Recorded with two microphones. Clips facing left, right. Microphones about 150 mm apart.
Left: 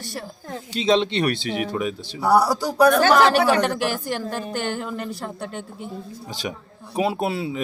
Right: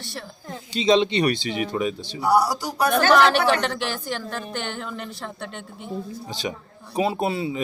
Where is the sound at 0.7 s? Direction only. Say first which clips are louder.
Right 1 dB; 5° left (ahead or behind).